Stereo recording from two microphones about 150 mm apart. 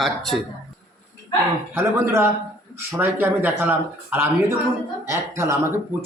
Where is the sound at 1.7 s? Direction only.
15° right (ahead or behind).